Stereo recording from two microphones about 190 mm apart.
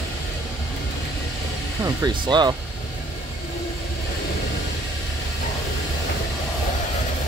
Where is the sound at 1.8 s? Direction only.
20° right (ahead or behind).